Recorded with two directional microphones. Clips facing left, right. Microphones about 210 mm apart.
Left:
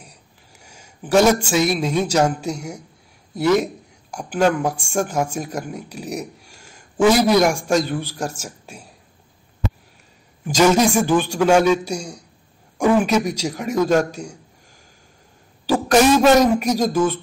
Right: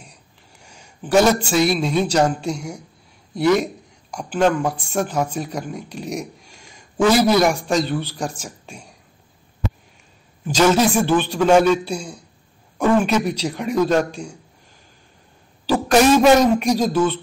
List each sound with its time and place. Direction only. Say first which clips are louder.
0.0 s a sound: even; 10° left (ahead or behind)
1.2 s a man's voice: even; 10° left (ahead or behind)
10.4 s speech: left 1 dB; 10° left (ahead or behind)
16.2 s speech: even; 5° left (ahead or behind)